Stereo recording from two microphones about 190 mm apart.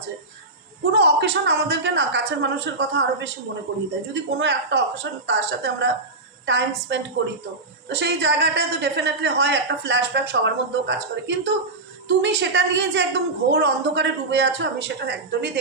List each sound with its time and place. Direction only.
0.9 s a woman's voice: 60° right (ahead or behind)